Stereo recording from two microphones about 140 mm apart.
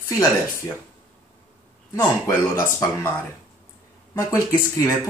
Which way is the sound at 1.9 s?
20° left (ahead or behind).